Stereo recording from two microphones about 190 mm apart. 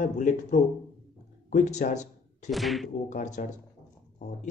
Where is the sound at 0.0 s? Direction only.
40° left (ahead or behind).